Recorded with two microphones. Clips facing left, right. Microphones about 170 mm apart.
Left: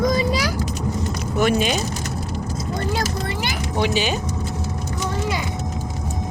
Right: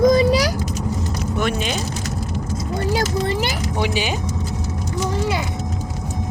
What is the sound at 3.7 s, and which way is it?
Speech, 10° right (ahead or behind).